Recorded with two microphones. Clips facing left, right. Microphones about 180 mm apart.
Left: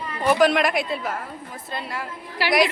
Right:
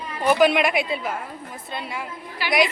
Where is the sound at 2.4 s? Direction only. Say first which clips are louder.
Left 3 dB; 80° left.